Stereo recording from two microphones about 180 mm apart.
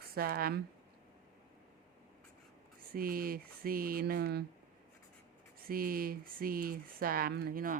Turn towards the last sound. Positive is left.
turn(degrees=-55)  # may be behind; listen again after turning